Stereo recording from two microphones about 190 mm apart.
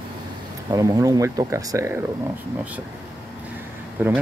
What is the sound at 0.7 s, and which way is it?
Speech, 20° right (ahead or behind).